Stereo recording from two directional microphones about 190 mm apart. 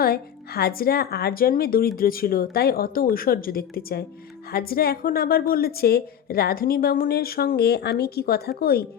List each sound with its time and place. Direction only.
0.0 s a woman's voice: 55° left (ahead or behind)